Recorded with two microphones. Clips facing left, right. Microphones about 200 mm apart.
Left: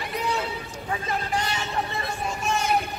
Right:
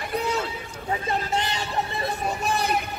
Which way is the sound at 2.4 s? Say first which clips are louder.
Even; 35° right (ahead or behind).